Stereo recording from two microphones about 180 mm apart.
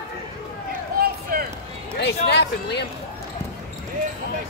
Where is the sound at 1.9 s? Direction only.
70° left (ahead or behind).